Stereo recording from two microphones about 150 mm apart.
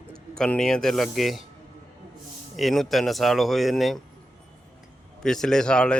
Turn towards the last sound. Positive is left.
turn(degrees=5)  # may be behind; listen again after turning